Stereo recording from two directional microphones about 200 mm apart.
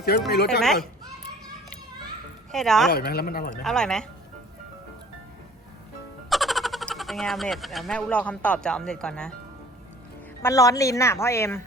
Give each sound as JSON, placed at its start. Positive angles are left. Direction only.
{"t": 0.3, "sound": "a woman's voice", "side_deg": 55}
{"t": 0.6, "sound": "speech", "side_deg": 0}
{"t": 2.5, "sound": "speech", "side_deg": 0}
{"t": 2.9, "sound": "a woman's voice", "side_deg": 50}
{"t": 3.5, "sound": "speech", "side_deg": 0}
{"t": 6.3, "sound": "speech", "side_deg": 0}
{"t": 10.4, "sound": "a woman's voice", "side_deg": 15}